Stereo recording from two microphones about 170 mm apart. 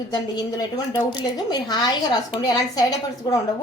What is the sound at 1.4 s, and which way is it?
A woman's voice, 25° left (ahead or behind).